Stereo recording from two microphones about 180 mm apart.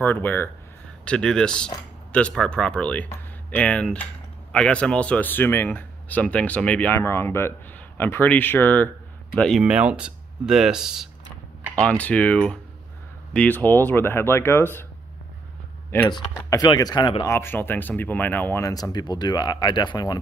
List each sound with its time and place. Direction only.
0.0 s speech: 10° left (ahead or behind)
12.0 s speech: 10° left (ahead or behind)
16.1 s speech: 20° left (ahead or behind)
17.3 s speech: 10° left (ahead or behind)